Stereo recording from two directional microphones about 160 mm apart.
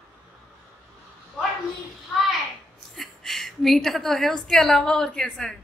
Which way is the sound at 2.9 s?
Centre (ahead or behind).